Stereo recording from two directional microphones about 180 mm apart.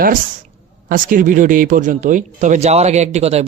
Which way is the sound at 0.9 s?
50° right (ahead or behind).